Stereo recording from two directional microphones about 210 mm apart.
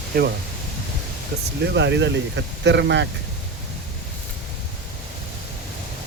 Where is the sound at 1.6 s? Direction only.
55° right (ahead or behind).